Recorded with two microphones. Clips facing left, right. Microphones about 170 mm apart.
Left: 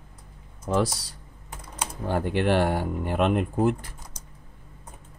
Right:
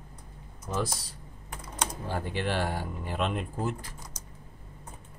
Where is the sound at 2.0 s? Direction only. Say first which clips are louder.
Left 10 dB; 60° left (ahead or behind).